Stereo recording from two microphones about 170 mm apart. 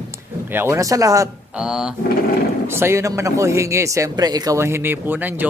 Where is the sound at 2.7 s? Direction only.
15° right (ahead or behind).